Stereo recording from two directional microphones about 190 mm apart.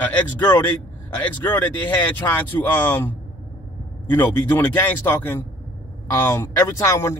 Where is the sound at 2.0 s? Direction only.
10° left (ahead or behind).